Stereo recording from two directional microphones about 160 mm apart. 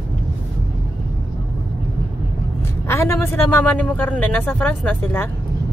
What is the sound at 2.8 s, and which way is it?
A man's voice, 15° left (ahead or behind).